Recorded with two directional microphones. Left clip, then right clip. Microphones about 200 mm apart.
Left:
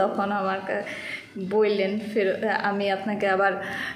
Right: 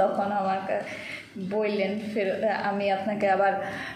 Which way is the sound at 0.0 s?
40° left (ahead or behind).